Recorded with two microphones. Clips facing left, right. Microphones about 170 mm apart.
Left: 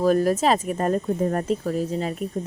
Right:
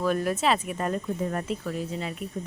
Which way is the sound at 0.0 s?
40° left (ahead or behind).